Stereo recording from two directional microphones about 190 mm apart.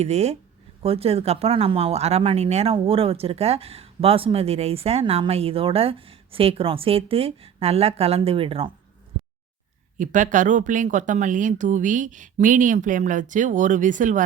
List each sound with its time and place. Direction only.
0.0 s speech: 35° right (ahead or behind)
10.0 s speech: 40° right (ahead or behind)